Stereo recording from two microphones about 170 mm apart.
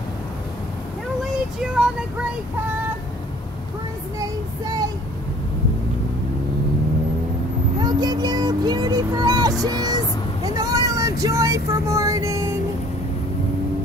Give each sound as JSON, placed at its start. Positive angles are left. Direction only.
{"t": 1.2, "sound": "child singing", "side_deg": -5}
{"t": 4.2, "sound": "child singing", "side_deg": -25}
{"t": 7.8, "sound": "vehicle", "side_deg": -25}